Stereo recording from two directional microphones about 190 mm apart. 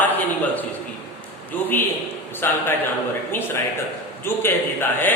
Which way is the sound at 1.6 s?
10° left (ahead or behind).